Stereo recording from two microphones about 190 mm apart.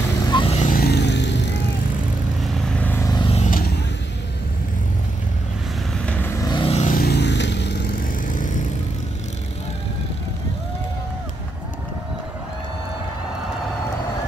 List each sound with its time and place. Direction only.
0.3 s vehicle: 25° left (ahead or behind)
0.6 s vehicle: 45° left (ahead or behind); by 1.4 s 65° left (ahead or behind)
2.4 s vehicle: 5° left (ahead or behind); by 3.3 s 20° left (ahead or behind)
3.3 s vehicle: 45° left (ahead or behind)
6.0 s vehicle: 10° left (ahead or behind); by 7.0 s 35° left (ahead or behind)
7.0 s vehicle: 60° left (ahead or behind)